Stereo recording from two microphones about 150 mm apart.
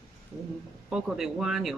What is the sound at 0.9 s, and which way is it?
Speech, 5° right (ahead or behind).